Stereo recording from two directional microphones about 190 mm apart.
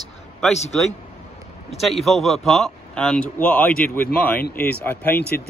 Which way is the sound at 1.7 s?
Centre (ahead or behind).